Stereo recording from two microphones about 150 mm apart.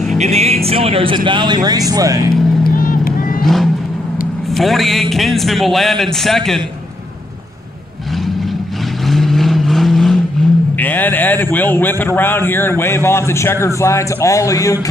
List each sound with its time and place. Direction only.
0.2 s speech: 45° right (ahead or behind); by 2.3 s 20° right (ahead or behind)
2.6 s vehicle: 70° left (ahead or behind)
3.4 s vehicle: centre (ahead or behind)
4.6 s a man's voice: centre (ahead or behind)
9.0 s vehicle: centre (ahead or behind)
10.8 s a man's voice: 10° left (ahead or behind)